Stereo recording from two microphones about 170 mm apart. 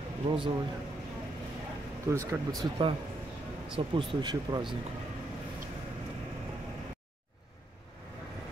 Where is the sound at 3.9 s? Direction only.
30° right (ahead or behind).